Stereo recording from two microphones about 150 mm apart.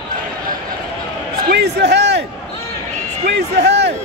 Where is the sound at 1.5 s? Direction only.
90° right.